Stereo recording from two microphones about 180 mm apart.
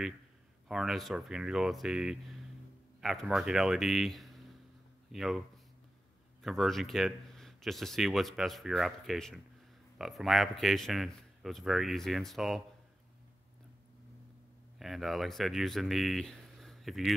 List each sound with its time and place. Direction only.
0.7 s speech: centre (ahead or behind)
6.4 s speech: centre (ahead or behind)
14.8 s speech: centre (ahead or behind)